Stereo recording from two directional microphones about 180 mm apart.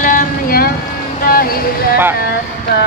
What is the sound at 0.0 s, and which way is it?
Vehicle, 50° left (ahead or behind).